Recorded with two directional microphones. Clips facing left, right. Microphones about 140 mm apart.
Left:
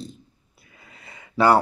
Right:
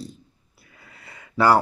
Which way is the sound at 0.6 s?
20° left (ahead or behind).